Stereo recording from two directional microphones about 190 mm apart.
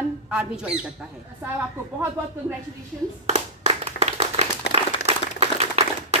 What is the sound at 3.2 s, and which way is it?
Clapping, 35° right (ahead or behind).